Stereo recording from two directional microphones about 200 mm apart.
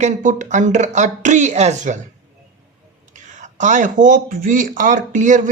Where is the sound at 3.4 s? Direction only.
40° right (ahead or behind).